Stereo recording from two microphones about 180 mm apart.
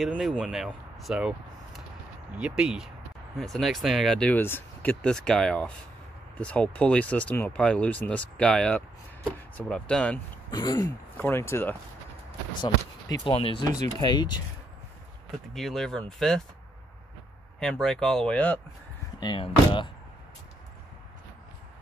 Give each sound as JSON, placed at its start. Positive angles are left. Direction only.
{"t": 0.0, "sound": "speech", "side_deg": 0}
{"t": 10.5, "sound": "speech", "side_deg": 20}
{"t": 13.2, "sound": "speech", "side_deg": 30}
{"t": 15.5, "sound": "speech", "side_deg": 0}
{"t": 17.6, "sound": "speech", "side_deg": 5}
{"t": 19.1, "sound": "speech", "side_deg": 25}